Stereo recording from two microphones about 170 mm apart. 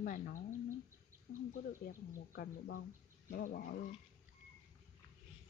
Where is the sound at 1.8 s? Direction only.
60° left (ahead or behind).